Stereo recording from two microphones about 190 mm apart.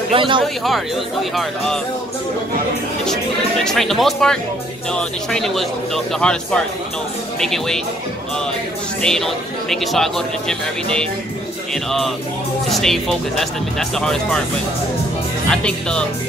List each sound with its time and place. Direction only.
0.1 s speech: 25° right (ahead or behind)
0.4 s speech: centre (ahead or behind)
3.6 s speech: centre (ahead or behind)
9.0 s speech: centre (ahead or behind)
11.7 s speech: centre (ahead or behind)
15.5 s speech: 5° left (ahead or behind)